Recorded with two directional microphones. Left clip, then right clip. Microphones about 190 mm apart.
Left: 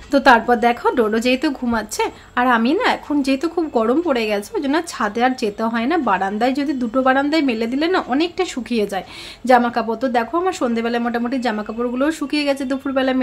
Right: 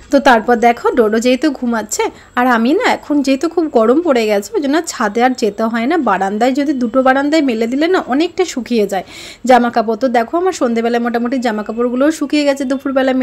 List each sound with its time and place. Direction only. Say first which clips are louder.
0.1 s a woman's voice: right 3 dB; 25° right (ahead or behind)